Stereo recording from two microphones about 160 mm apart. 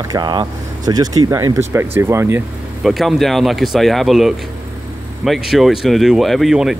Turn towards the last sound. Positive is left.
turn(degrees=0)  # may be behind; listen again after turning